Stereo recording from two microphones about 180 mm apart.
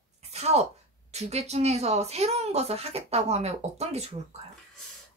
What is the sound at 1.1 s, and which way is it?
Speech, 35° right (ahead or behind).